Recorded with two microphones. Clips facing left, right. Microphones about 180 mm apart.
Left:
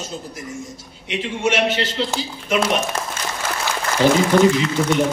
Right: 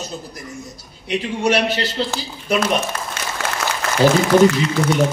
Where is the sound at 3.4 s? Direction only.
75° right (ahead or behind).